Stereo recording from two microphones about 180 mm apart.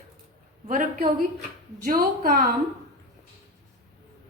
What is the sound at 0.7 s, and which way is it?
A woman's voice, 50° right (ahead or behind).